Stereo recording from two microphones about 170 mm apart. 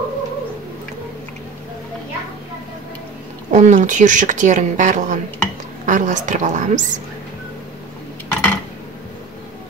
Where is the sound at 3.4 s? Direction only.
45° right (ahead or behind).